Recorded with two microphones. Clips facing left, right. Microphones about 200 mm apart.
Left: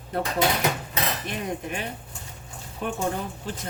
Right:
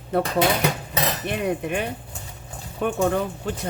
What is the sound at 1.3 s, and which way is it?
A woman's voice, 65° right (ahead or behind).